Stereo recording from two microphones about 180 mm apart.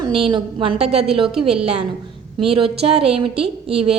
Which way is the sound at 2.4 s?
30° right (ahead or behind).